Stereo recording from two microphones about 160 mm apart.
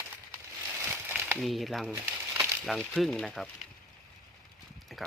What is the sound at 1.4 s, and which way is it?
Speech, centre (ahead or behind).